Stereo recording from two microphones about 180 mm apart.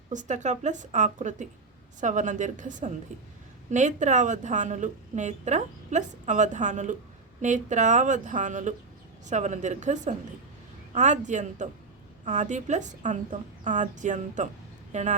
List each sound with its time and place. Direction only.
0.1 s a woman's voice: 45° right (ahead or behind)